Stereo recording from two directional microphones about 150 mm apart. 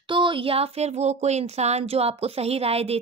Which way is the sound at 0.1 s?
35° right (ahead or behind).